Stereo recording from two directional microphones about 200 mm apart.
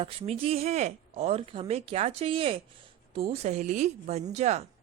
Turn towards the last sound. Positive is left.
turn(degrees=-35)  # may be behind; listen again after turning